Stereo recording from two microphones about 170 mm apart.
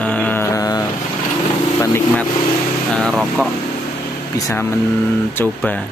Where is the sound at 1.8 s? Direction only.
15° left (ahead or behind).